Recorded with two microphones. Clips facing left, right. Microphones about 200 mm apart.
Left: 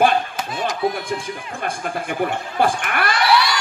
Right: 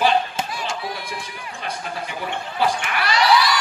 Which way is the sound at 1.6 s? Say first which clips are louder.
Left 3 dB; 50° left (ahead or behind).